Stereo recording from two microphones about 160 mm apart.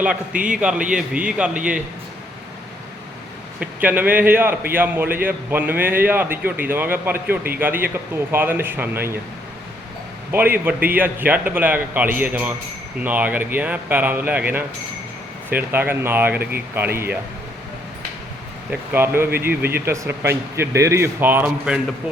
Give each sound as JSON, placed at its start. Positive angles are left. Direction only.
{"t": 0.3, "sound": "a man's voice", "side_deg": -55}
{"t": 0.6, "sound": "speech", "side_deg": -5}
{"t": 3.6, "sound": "speech", "side_deg": -10}
{"t": 10.3, "sound": "speech", "side_deg": -10}
{"t": 18.7, "sound": "speech", "side_deg": -15}
{"t": 19.5, "sound": "speech", "side_deg": -75}
{"t": 19.8, "sound": "speech", "side_deg": -15}